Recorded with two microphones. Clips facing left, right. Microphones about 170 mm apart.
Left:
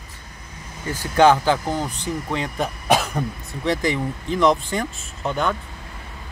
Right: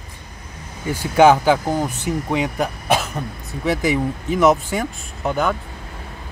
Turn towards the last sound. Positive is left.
turn(degrees=-5)  # may be behind; listen again after turning